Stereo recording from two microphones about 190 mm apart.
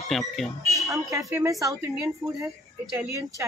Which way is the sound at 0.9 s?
15° right (ahead or behind).